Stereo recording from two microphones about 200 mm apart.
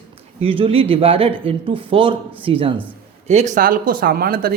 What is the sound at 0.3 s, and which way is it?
Speech, 30° right (ahead or behind).